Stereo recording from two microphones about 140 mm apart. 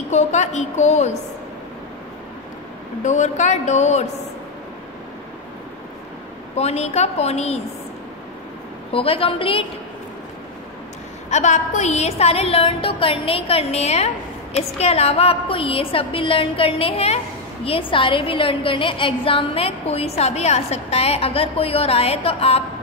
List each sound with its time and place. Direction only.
0.1 s a woman's voice: 55° left (ahead or behind)
3.0 s a woman's voice: 60° left (ahead or behind)
6.5 s a woman's voice: 50° left (ahead or behind)
8.9 s a woman's voice: 40° left (ahead or behind)
11.2 s a woman's voice: 55° left (ahead or behind)